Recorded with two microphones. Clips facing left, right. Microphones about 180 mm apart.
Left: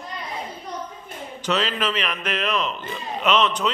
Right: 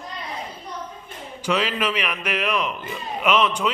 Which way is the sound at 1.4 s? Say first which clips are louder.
Right 1 dB; 10° right (ahead or behind).